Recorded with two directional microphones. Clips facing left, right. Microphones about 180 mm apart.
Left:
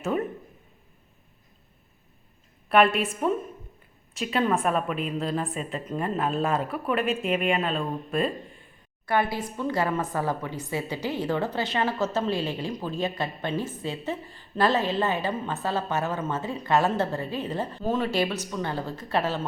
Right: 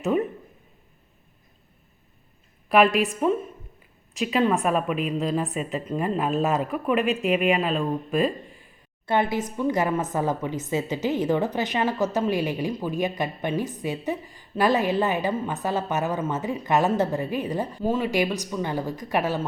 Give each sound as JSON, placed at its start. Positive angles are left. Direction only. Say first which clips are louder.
{"t": 0.0, "sound": "a sound", "louder": "right 4 dB", "side_deg": -15}
{"t": 3.2, "sound": "speech", "louder": "right 3 dB", "side_deg": 0}
{"t": 9.0, "sound": "a woman's voice", "louder": "right 2 dB", "side_deg": -25}